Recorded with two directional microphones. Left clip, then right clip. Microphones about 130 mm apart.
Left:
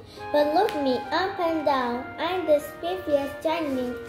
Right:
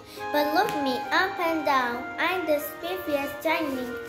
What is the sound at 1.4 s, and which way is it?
A child's voice, 25° right (ahead or behind).